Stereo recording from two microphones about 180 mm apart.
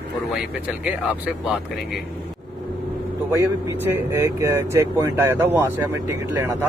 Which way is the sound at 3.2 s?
15° right (ahead or behind).